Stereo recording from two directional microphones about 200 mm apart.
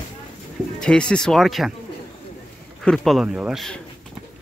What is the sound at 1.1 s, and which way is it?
Speech, 5° left (ahead or behind).